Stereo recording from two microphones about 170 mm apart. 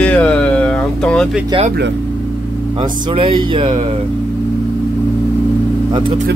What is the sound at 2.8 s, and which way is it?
Speech, 30° right (ahead or behind).